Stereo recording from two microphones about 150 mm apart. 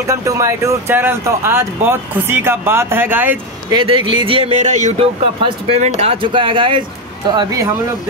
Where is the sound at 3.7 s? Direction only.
35° right (ahead or behind).